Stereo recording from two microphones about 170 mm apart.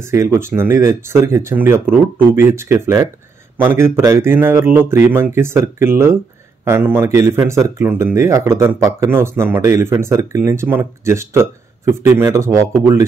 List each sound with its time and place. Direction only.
0.0 s speech: 15° right (ahead or behind)